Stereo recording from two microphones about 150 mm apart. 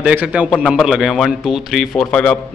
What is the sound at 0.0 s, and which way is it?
A man's voice, 10° right (ahead or behind).